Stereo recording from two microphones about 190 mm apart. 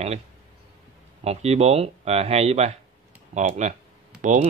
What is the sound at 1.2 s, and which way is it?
Speech, 35° right (ahead or behind).